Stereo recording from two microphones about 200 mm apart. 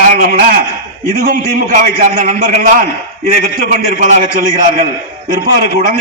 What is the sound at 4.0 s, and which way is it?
Speech, 40° right (ahead or behind).